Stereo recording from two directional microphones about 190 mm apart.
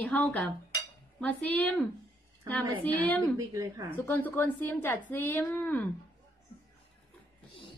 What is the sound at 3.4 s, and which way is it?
Speech, 15° right (ahead or behind).